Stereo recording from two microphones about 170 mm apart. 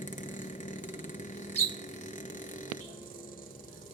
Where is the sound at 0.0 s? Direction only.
50° left (ahead or behind).